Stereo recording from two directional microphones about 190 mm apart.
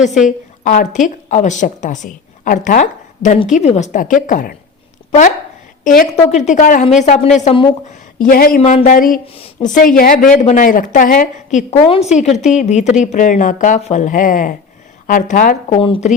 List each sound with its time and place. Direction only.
0.3 s a woman's voice: 45° left (ahead or behind)
6.2 s a woman's voice: 35° left (ahead or behind)
8.2 s a woman's voice: 50° left (ahead or behind)
9.2 s a woman's voice: 30° left (ahead or behind)
9.7 s a woman's voice: 45° left (ahead or behind)
15.7 s a woman's voice: 30° left (ahead or behind)